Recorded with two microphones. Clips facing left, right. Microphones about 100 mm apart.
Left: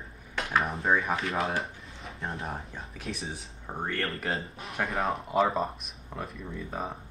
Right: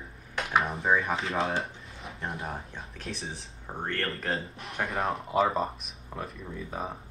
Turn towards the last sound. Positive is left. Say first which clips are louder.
# even
turn(degrees=0)  # may be behind; listen again after turning